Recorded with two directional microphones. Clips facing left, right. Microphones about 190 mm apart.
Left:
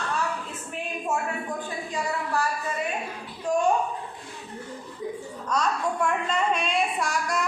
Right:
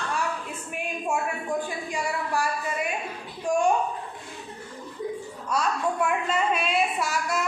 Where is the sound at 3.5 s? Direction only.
10° right (ahead or behind).